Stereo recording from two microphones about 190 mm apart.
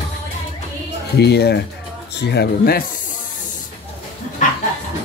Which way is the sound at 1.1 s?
60° left (ahead or behind).